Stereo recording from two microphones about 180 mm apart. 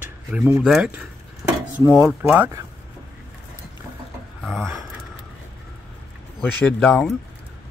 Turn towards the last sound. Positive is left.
turn(degrees=0)  # may be behind; listen again after turning